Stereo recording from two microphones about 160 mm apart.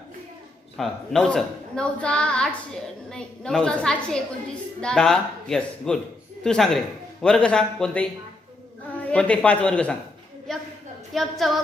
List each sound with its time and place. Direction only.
0.8 s a woman's voice: 5° left (ahead or behind)
10.5 s a sound: 5° left (ahead or behind)
11.1 s a woman's voice: centre (ahead or behind)